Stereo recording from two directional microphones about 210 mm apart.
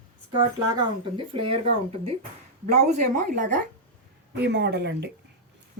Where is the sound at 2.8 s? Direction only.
35° right (ahead or behind).